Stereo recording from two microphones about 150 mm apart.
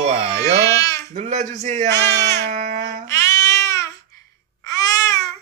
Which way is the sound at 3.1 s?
20° left (ahead or behind).